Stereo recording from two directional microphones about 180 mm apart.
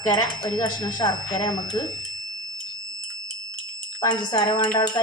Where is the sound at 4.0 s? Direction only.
25° left (ahead or behind).